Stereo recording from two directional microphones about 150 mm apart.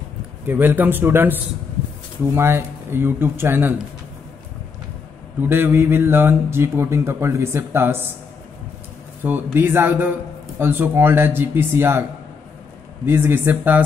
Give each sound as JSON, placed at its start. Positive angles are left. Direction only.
{"t": 0.5, "sound": "speech", "side_deg": -10}
{"t": 5.4, "sound": "speech", "side_deg": -15}
{"t": 9.2, "sound": "speech", "side_deg": -15}